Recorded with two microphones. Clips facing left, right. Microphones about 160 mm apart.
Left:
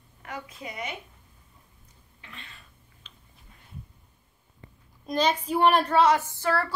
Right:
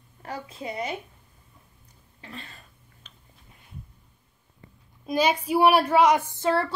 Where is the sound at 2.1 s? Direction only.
35° right (ahead or behind).